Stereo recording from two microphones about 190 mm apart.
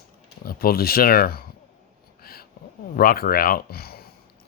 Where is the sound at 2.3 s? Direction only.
55° left (ahead or behind).